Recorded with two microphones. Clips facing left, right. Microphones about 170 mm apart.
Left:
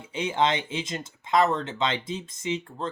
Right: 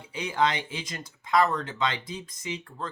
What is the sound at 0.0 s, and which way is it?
Speech, 25° left (ahead or behind).